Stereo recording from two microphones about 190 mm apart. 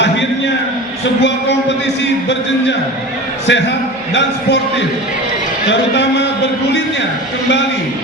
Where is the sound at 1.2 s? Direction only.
65° left (ahead or behind).